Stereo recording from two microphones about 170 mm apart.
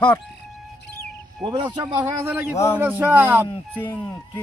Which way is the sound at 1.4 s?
25° right (ahead or behind).